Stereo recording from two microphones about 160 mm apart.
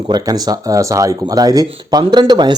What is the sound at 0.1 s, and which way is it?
Speech, 25° right (ahead or behind).